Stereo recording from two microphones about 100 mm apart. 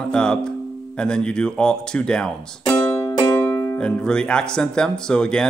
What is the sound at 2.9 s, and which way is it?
Music, 30° left (ahead or behind).